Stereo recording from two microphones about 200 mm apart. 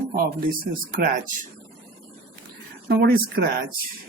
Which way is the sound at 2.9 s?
50° right (ahead or behind).